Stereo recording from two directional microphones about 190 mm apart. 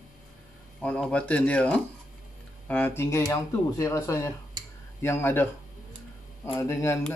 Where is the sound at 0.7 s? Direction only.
5° left (ahead or behind).